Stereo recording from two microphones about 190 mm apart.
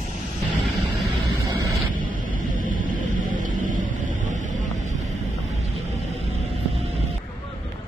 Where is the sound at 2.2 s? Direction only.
45° right (ahead or behind).